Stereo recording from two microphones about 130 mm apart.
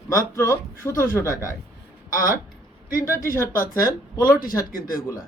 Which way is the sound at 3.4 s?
90° left.